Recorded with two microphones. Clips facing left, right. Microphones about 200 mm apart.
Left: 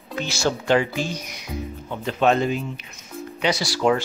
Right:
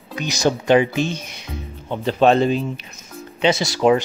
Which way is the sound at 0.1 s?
15° right (ahead or behind).